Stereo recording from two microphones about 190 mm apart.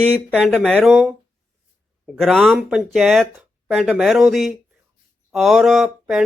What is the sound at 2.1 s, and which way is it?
Speech, centre (ahead or behind).